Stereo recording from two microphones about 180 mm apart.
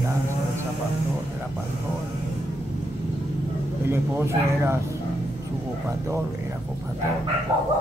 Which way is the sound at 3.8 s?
10° right (ahead or behind).